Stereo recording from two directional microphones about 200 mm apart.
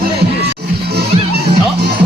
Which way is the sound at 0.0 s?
50° right (ahead or behind).